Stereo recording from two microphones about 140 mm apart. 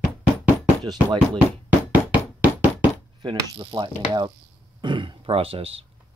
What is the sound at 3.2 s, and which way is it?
Speech, 35° right (ahead or behind).